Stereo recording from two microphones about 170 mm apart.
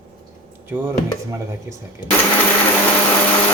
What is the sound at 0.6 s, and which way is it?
Speech, 10° right (ahead or behind).